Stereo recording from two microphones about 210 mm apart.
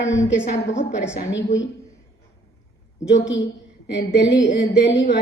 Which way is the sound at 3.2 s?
60° left (ahead or behind).